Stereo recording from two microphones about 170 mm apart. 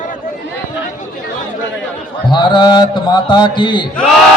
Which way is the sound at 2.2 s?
25° left (ahead or behind).